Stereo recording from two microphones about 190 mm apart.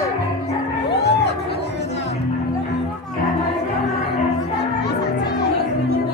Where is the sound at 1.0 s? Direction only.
60° left (ahead or behind).